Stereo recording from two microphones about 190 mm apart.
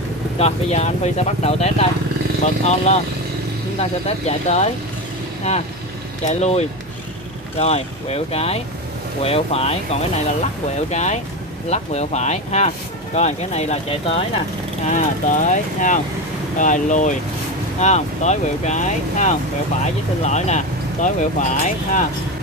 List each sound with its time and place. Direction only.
0.4 s speech: 35° left (ahead or behind)
4.3 s speech: 35° left (ahead or behind)
6.2 s speech: 35° left (ahead or behind)